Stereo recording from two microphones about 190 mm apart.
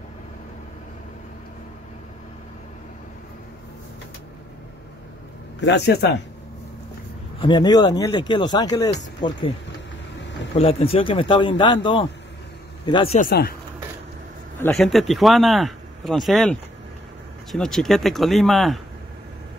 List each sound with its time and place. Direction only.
5.7 s speech: 60° left (ahead or behind)
7.3 s speech: 25° left (ahead or behind)
10.5 s speech: 30° left (ahead or behind)
13.2 s speech: 55° left (ahead or behind)
14.8 s speech: centre (ahead or behind)